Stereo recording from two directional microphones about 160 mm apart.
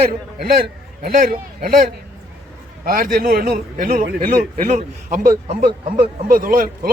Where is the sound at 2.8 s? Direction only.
65° right (ahead or behind).